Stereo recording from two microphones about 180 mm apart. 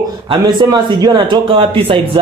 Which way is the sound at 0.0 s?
25° right (ahead or behind).